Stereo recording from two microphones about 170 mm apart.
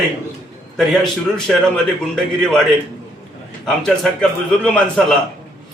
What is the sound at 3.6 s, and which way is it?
A man's voice, centre (ahead or behind).